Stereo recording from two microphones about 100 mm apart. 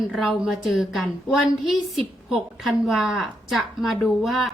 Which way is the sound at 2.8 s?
5° right (ahead or behind).